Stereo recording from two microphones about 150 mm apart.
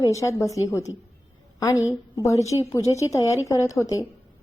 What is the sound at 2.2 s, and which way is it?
A woman's voice, 20° left (ahead or behind).